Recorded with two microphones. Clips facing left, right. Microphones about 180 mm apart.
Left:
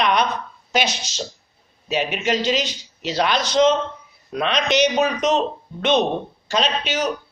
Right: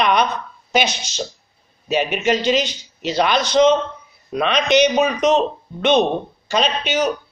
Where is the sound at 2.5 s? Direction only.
55° right (ahead or behind).